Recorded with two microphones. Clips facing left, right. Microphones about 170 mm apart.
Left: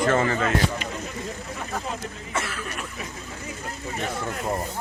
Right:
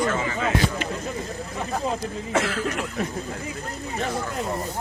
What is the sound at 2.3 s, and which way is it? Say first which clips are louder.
Cough: right 7 dB; 90° right.